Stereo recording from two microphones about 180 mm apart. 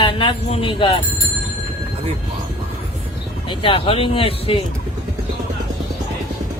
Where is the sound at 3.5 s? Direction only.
30° left (ahead or behind).